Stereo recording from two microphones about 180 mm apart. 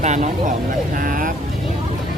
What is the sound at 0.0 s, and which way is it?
Speech, 40° right (ahead or behind).